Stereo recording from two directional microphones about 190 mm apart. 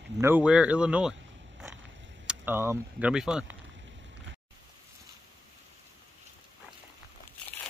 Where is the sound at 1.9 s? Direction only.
75° right (ahead or behind).